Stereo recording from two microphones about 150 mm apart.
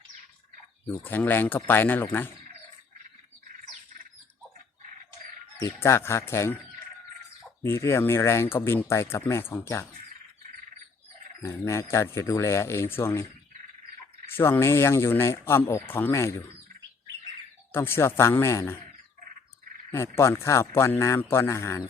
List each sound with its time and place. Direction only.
1.0 s speech: 15° left (ahead or behind)
5.6 s speech: 15° left (ahead or behind)
7.6 s speech: 15° left (ahead or behind)
11.4 s speech: 20° left (ahead or behind)
14.3 s speech: 15° left (ahead or behind)
17.7 s speech: 15° left (ahead or behind)
19.9 s speech: 15° left (ahead or behind)